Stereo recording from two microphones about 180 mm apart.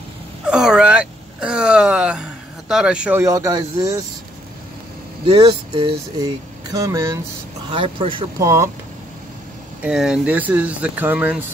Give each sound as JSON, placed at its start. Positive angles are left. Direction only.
{"t": 0.5, "sound": "a sound", "side_deg": -5}
{"t": 5.2, "sound": "speech", "side_deg": -30}
{"t": 6.7, "sound": "speech", "side_deg": -15}
{"t": 7.7, "sound": "speech", "side_deg": -30}
{"t": 8.4, "sound": "speech", "side_deg": -15}
{"t": 9.8, "sound": "speech", "side_deg": -5}